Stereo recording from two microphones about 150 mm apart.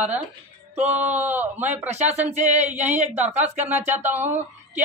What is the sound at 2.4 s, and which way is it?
Speech, 50° right (ahead or behind).